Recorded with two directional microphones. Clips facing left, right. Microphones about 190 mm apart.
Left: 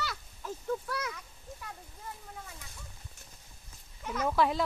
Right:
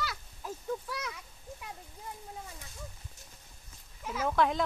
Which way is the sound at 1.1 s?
15° right (ahead or behind).